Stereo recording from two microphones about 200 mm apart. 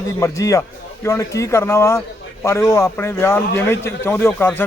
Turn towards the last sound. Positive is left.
turn(degrees=10)  # may be behind; listen again after turning